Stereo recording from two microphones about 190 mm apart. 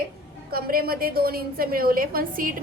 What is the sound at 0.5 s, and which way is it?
A woman's voice, 50° right (ahead or behind).